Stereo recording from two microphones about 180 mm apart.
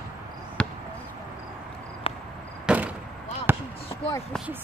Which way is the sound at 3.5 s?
10° right (ahead or behind).